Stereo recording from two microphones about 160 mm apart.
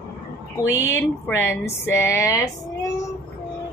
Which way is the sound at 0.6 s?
15° left (ahead or behind).